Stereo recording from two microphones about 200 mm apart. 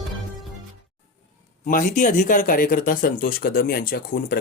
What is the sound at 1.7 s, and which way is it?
Speech, 40° left (ahead or behind).